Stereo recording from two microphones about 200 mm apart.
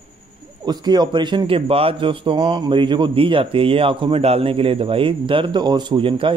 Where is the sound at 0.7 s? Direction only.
20° right (ahead or behind).